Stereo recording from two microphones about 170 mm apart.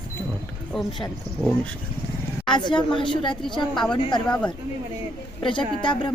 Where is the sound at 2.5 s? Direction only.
25° left (ahead or behind).